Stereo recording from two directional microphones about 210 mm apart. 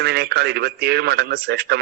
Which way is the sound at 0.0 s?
50° right (ahead or behind).